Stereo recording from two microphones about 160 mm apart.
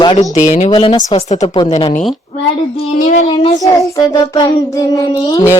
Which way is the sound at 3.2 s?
30° left (ahead or behind).